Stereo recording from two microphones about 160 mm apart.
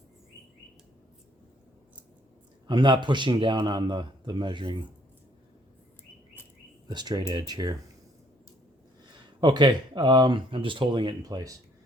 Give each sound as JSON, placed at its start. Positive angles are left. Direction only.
{"t": 2.6, "sound": "a man's voice", "side_deg": -30}
{"t": 6.8, "sound": "a man's voice", "side_deg": -25}
{"t": 9.4, "sound": "a man's voice", "side_deg": -30}